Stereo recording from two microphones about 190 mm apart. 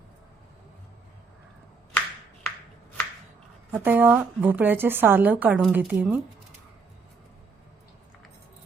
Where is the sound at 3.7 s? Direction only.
10° right (ahead or behind).